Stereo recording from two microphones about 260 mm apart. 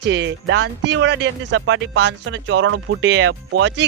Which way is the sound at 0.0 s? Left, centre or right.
Right.